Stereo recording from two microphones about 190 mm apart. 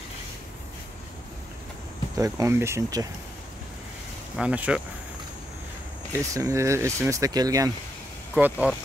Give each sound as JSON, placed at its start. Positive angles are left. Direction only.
{"t": 2.1, "sound": "speech", "side_deg": -15}
{"t": 4.4, "sound": "speech", "side_deg": -5}
{"t": 6.1, "sound": "speech", "side_deg": -15}
{"t": 8.4, "sound": "speech", "side_deg": -10}